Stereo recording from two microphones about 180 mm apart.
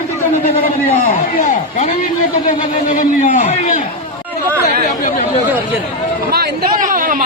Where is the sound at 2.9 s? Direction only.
45° left (ahead or behind).